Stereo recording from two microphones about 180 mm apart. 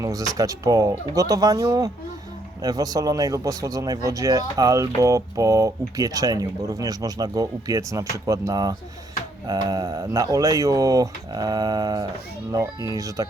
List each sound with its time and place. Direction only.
0.0 s speech: 20° right (ahead or behind)